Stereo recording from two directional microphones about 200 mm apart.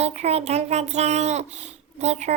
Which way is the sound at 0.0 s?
35° right (ahead or behind).